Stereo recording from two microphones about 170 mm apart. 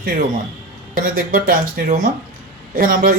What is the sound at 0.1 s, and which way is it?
Speech, 55° right (ahead or behind).